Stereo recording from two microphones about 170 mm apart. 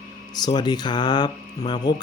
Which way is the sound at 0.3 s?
25° left (ahead or behind).